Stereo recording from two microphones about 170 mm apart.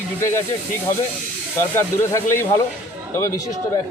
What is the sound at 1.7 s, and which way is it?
Speech, 15° left (ahead or behind).